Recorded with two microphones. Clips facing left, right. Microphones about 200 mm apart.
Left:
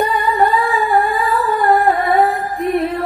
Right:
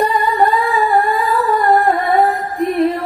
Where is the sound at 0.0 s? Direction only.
Centre (ahead or behind).